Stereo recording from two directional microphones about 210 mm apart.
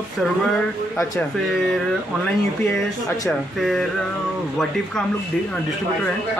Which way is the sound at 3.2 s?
Centre (ahead or behind).